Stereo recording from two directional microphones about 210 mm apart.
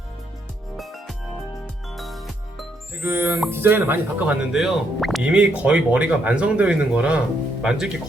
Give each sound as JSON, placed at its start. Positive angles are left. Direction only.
{"t": 0.8, "sound": "music", "side_deg": 0}
{"t": 7.6, "sound": "speech", "side_deg": 0}